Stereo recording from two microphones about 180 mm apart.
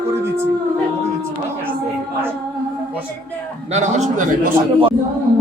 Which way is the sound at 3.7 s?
40° right (ahead or behind).